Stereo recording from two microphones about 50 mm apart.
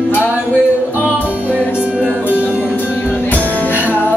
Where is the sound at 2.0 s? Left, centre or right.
Left.